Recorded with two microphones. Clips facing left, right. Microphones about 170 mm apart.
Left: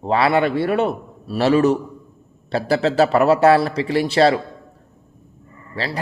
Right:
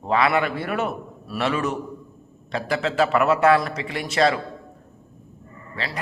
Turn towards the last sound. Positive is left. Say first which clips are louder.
# left 5 dB
turn(degrees=35)  # may be behind; listen again after turning